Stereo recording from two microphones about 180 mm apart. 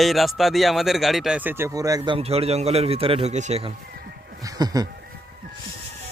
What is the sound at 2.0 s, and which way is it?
Speech, 30° right (ahead or behind).